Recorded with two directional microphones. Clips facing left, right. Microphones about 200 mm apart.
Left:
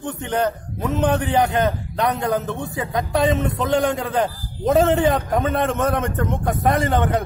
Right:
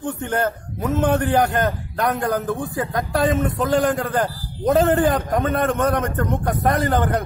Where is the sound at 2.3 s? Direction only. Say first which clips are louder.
Right 1 dB; centre (ahead or behind).